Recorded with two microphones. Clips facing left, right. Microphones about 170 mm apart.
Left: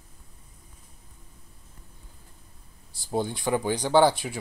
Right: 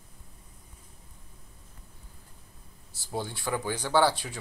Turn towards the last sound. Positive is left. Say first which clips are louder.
# left 4 dB
turn(degrees=15)  # may be behind; listen again after turning